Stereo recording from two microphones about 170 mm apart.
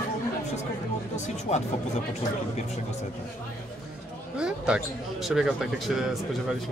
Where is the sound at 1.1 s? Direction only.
40° left (ahead or behind).